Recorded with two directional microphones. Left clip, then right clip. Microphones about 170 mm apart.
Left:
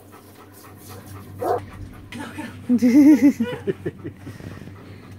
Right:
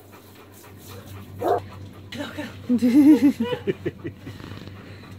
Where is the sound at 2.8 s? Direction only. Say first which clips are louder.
Left 2 dB; 15° left (ahead or behind).